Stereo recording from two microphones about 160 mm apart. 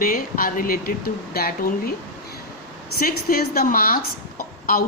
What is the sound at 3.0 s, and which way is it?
Speech, 65° left (ahead or behind).